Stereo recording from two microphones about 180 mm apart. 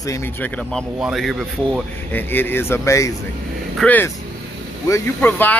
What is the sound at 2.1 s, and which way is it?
Speech, 10° left (ahead or behind).